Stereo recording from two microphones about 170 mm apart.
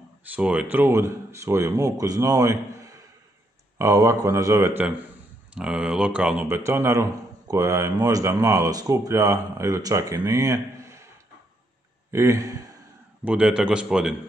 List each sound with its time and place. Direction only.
0.2 s speech: 10° right (ahead or behind)
12.1 s speech: 15° right (ahead or behind)
13.2 s a man's voice: 5° right (ahead or behind)